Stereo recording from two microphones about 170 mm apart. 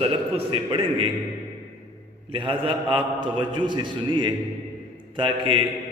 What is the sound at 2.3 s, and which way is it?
A man's voice, 30° right (ahead or behind).